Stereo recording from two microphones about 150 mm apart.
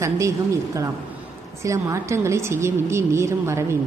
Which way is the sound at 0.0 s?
20° right (ahead or behind).